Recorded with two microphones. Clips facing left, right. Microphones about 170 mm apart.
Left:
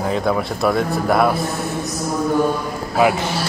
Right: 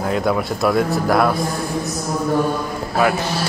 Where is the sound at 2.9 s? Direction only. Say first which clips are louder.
Left 2 dB; 15° left (ahead or behind).